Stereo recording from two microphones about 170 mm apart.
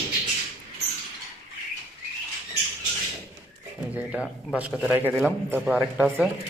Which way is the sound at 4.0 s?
5° left (ahead or behind).